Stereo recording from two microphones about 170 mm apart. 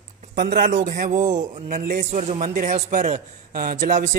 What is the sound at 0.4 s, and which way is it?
A man's voice, 55° right (ahead or behind).